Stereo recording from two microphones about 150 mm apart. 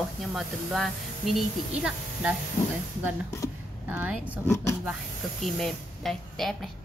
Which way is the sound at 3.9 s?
10° right (ahead or behind).